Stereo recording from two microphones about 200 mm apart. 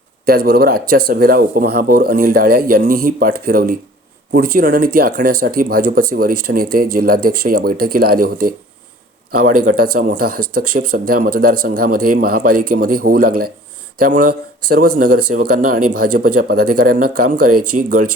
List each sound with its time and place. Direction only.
0.3 s speech: 50° right (ahead or behind)